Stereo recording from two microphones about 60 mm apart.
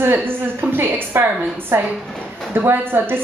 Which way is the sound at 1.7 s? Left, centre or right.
Right.